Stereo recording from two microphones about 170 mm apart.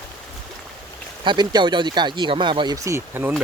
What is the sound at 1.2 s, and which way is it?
Speech, 25° right (ahead or behind).